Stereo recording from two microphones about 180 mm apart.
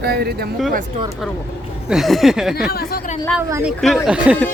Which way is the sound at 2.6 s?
55° left (ahead or behind).